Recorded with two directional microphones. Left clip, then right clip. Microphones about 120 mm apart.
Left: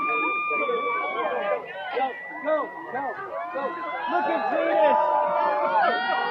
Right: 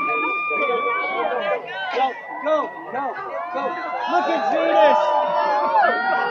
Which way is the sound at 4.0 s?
30° right (ahead or behind).